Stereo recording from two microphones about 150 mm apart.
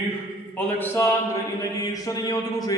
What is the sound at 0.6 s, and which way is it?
Music, 10° left (ahead or behind).